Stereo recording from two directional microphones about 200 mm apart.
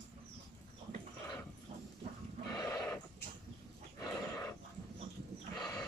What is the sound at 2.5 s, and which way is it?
Horse, 15° left (ahead or behind).